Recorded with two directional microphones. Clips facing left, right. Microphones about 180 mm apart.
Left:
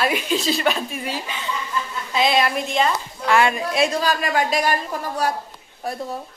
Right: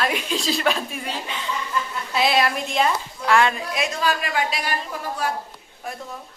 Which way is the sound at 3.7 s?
35° left (ahead or behind).